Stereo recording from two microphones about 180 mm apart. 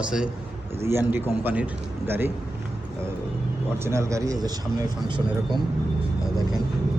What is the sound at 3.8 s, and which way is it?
Speech, 15° right (ahead or behind).